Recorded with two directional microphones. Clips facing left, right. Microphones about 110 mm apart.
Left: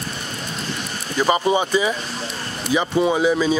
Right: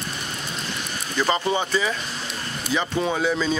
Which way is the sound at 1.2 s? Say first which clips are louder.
Left 4 dB; 15° left (ahead or behind).